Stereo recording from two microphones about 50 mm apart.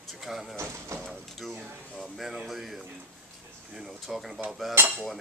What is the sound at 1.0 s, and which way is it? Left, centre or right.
Printer, centre.